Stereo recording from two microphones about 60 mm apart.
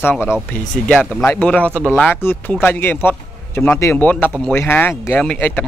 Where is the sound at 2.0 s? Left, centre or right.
Left.